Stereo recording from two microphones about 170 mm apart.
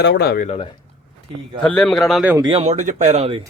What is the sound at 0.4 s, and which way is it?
Speech, 40° left (ahead or behind).